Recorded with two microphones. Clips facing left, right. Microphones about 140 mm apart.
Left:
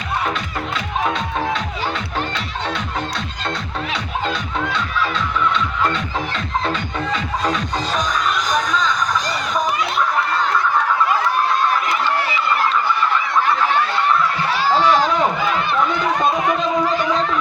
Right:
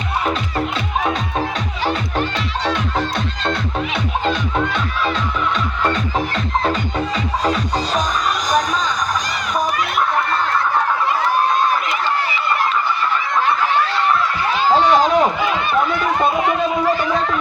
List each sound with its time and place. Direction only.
14.5 s run: 20° right (ahead or behind)